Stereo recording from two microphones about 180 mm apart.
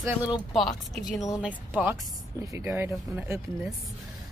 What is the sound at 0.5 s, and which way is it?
Speech, centre (ahead or behind).